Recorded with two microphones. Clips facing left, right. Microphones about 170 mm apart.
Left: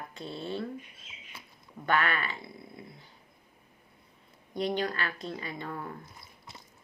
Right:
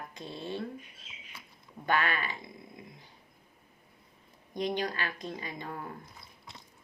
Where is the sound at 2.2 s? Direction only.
15° right (ahead or behind).